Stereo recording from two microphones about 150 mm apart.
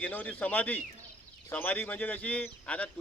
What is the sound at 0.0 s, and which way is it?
Speech, 10° left (ahead or behind).